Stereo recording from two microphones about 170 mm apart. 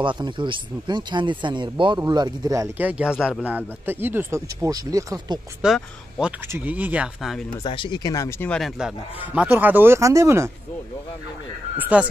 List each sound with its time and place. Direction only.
0.0 s speech: 30° right (ahead or behind)
5.6 s speech: 5° right (ahead or behind)
7.6 s speech: 30° left (ahead or behind)
8.5 s speech: centre (ahead or behind)
11.9 s speech: 10° right (ahead or behind)